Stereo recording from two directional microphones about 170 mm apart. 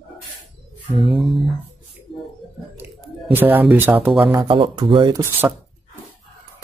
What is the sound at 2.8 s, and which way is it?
Speech, 10° right (ahead or behind).